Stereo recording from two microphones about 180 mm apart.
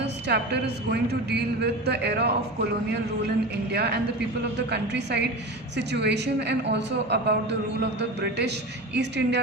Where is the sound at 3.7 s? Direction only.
65° right (ahead or behind).